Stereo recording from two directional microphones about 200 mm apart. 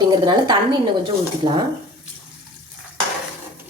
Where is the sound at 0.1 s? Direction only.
20° right (ahead or behind).